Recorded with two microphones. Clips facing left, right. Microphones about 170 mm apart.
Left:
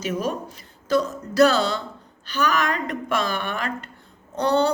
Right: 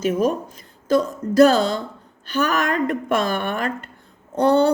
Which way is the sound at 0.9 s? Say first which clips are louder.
Right 3 dB; 50° right (ahead or behind).